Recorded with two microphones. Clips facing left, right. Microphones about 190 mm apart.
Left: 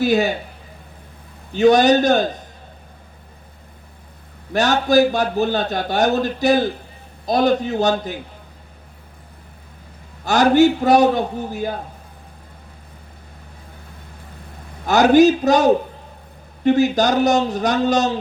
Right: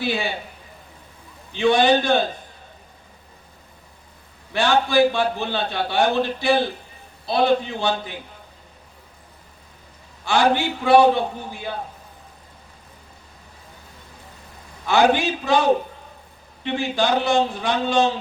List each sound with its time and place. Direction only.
0.0 s a man's voice: 40° left (ahead or behind)
1.5 s a man's voice: 40° left (ahead or behind)
4.5 s a man's voice: 40° left (ahead or behind)
10.2 s a man's voice: 40° left (ahead or behind)
14.8 s a man's voice: 40° left (ahead or behind)